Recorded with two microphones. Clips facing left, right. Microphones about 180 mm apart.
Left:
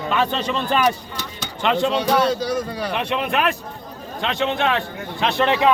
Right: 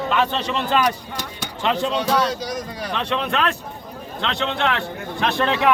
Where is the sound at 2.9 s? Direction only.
10° left (ahead or behind).